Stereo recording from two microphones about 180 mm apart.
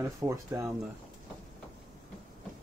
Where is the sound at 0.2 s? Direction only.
15° right (ahead or behind).